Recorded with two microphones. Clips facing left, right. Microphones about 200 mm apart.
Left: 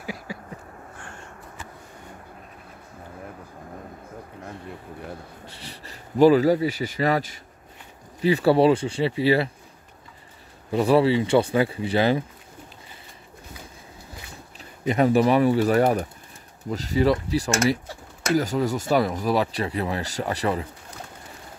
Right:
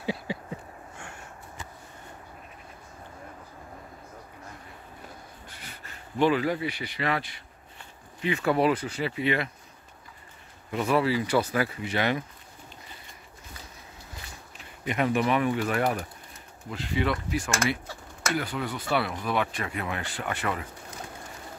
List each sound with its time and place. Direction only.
0.0 s a sound: 25° right (ahead or behind)
5.6 s speech: 35° left (ahead or behind)
10.7 s speech: 35° left (ahead or behind)
14.6 s speech: 35° left (ahead or behind)